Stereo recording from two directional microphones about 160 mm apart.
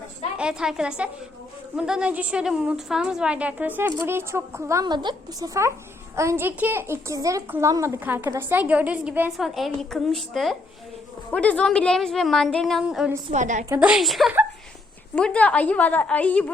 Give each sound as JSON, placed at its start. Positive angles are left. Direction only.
{"t": 0.3, "sound": "a woman's voice", "side_deg": -5}
{"t": 13.3, "sound": "a woman's voice", "side_deg": -50}
{"t": 13.7, "sound": "a woman's voice", "side_deg": -5}